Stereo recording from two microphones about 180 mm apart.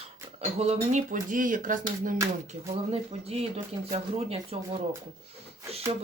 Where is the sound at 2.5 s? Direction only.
35° right (ahead or behind).